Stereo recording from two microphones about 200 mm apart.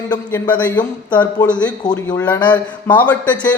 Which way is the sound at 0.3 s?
10° left (ahead or behind).